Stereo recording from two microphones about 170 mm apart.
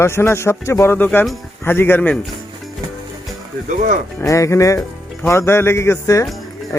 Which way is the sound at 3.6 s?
50° right (ahead or behind).